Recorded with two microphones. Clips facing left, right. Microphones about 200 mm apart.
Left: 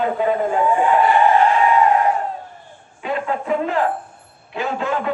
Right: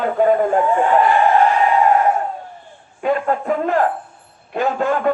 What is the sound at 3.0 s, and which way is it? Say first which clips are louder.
A man's voice: right 5 dB; 50° right (ahead or behind).